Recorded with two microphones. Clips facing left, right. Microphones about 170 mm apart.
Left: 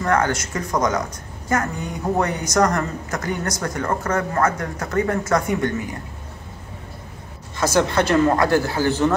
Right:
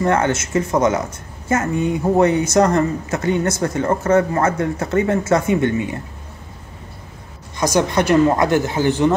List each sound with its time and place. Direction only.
0.0 s speech: 25° right (ahead or behind)
2.1 s speech: 25° right (ahead or behind)
7.5 s a woman's voice: 15° right (ahead or behind)